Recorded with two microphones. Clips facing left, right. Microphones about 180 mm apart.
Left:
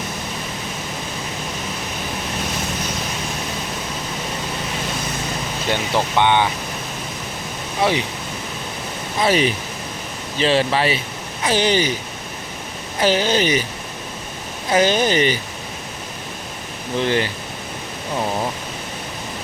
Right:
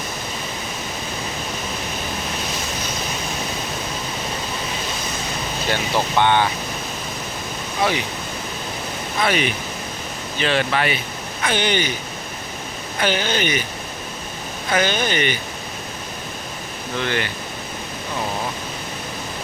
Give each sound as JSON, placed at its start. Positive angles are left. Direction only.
{"t": 5.7, "sound": "speech", "side_deg": 15}
{"t": 7.8, "sound": "speech", "side_deg": 25}
{"t": 9.2, "sound": "speech", "side_deg": 35}
{"t": 13.0, "sound": "speech", "side_deg": 35}
{"t": 14.8, "sound": "speech", "side_deg": 35}
{"t": 17.0, "sound": "speech", "side_deg": 30}